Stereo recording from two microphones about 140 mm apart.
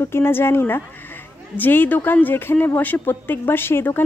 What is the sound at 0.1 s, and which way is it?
A woman's voice, 15° left (ahead or behind).